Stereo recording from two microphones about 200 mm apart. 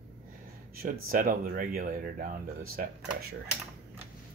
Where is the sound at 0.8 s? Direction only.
45° right (ahead or behind).